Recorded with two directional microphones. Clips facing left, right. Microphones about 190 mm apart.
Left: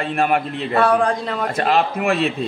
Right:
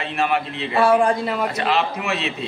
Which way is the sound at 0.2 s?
50° left (ahead or behind).